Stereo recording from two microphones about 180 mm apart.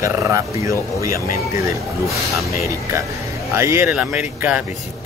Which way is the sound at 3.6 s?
15° right (ahead or behind).